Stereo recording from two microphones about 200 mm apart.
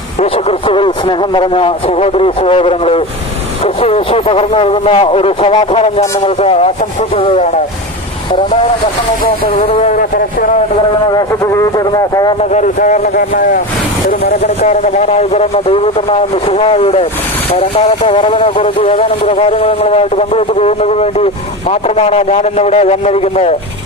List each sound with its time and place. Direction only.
0.2 s speech: 30° left (ahead or behind)
9.2 s speech: 45° left (ahead or behind)
11.3 s speech: 15° left (ahead or behind)
12.5 s a man's voice: 40° left (ahead or behind)